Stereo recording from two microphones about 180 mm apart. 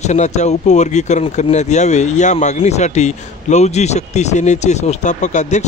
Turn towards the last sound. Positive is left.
turn(degrees=40)  # may be behind; listen again after turning